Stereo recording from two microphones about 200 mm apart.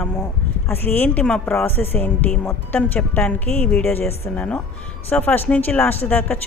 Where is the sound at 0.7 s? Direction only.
10° left (ahead or behind).